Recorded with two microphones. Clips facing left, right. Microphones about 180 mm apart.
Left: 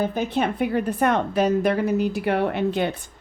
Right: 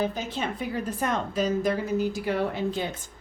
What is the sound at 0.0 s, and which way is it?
A woman's voice, 55° left (ahead or behind).